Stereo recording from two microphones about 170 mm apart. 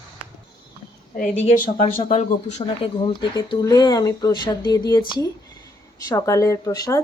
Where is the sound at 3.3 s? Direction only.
20° left (ahead or behind).